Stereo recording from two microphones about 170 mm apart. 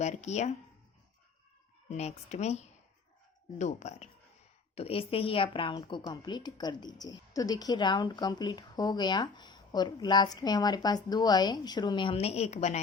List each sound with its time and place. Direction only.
0.0 s speech: 40° left (ahead or behind)
1.9 s speech: 40° left (ahead or behind)
3.6 s a woman's voice: 45° left (ahead or behind)